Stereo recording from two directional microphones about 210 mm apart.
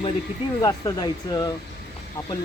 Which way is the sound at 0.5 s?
15° left (ahead or behind).